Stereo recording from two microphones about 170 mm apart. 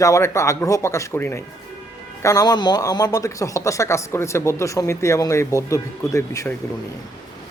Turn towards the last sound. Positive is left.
turn(degrees=20)  # may be behind; listen again after turning